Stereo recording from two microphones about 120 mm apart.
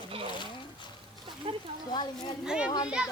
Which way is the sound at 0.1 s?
50° right (ahead or behind).